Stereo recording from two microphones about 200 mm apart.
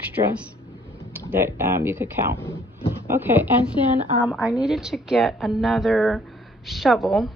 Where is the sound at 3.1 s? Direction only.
10° right (ahead or behind).